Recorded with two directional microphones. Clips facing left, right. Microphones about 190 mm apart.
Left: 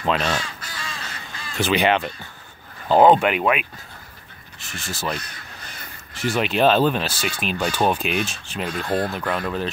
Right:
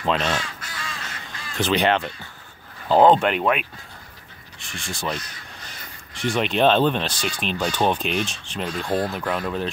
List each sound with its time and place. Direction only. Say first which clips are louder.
0.0 s speech: left 1 dB; 5° left (ahead or behind)
0.6 s crow: even; 30° left (ahead or behind)
1.6 s speech: left 1 dB; 10° left (ahead or behind)